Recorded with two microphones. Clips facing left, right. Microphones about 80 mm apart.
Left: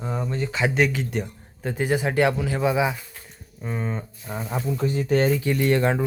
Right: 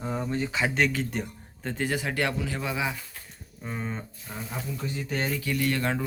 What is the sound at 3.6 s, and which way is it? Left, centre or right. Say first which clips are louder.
Speech: left 5 dB; centre.